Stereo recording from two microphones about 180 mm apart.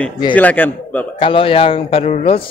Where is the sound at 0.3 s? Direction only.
10° left (ahead or behind).